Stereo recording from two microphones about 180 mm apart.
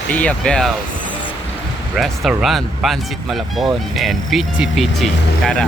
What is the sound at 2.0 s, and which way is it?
Speech, centre (ahead or behind).